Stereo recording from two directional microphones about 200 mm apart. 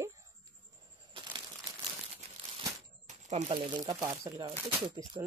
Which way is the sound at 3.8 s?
20° right (ahead or behind).